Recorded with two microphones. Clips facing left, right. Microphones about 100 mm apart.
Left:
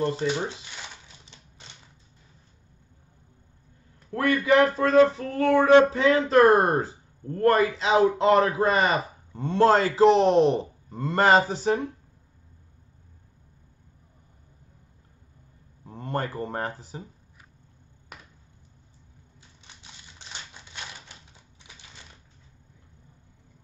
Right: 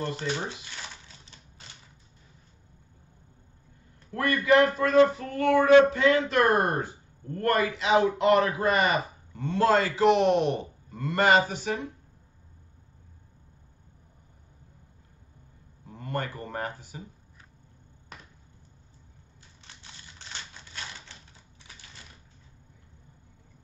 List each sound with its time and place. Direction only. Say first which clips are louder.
0.0 s speech: left 5 dB; 20° left (ahead or behind)
4.1 s a sound: left 1 dB; 30° left (ahead or behind)
15.9 s speech: left 3 dB; 30° left (ahead or behind)
20.2 s typewriter: even; 15° left (ahead or behind)